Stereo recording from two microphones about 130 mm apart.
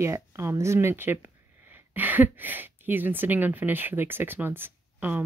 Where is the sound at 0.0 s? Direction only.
20° right (ahead or behind).